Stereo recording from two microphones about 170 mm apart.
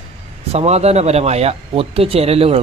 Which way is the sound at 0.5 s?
40° right (ahead or behind).